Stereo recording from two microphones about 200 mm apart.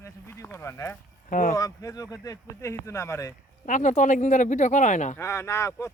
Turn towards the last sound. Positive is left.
turn(degrees=15)  # may be behind; listen again after turning